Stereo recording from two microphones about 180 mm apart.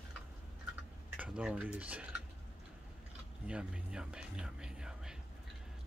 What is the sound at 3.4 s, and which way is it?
Speech, 5° right (ahead or behind).